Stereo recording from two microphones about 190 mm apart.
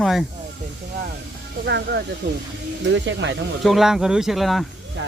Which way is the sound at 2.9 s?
75° right (ahead or behind).